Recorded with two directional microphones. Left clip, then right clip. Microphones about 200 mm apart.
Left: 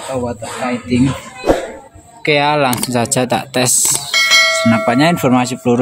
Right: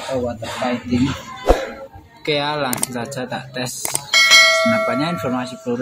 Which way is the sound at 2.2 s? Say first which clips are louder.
Left 8 dB; 35° left (ahead or behind).